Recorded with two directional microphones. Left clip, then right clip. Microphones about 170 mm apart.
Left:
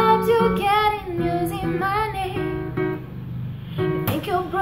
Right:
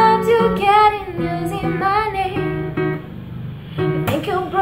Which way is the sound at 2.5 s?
20° right (ahead or behind).